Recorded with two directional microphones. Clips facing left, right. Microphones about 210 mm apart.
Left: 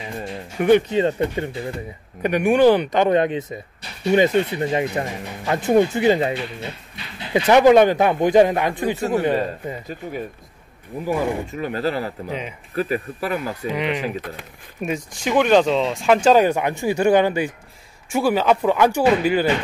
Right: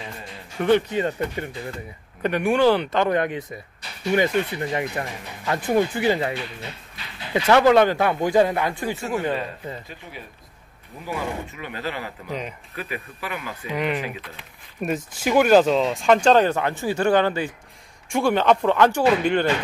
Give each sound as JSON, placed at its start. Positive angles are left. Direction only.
{"t": 0.6, "sound": "speech", "side_deg": 15}
{"t": 0.9, "sound": "speech", "side_deg": 25}
{"t": 2.2, "sound": "speech", "side_deg": 15}
{"t": 7.3, "sound": "speech", "side_deg": 15}
{"t": 11.1, "sound": "speech", "side_deg": 45}
{"t": 12.3, "sound": "speech", "side_deg": 0}
{"t": 12.7, "sound": "speech", "side_deg": 40}
{"t": 13.7, "sound": "speech", "side_deg": 0}
{"t": 14.0, "sound": "speech", "side_deg": 45}
{"t": 14.8, "sound": "speech", "side_deg": 0}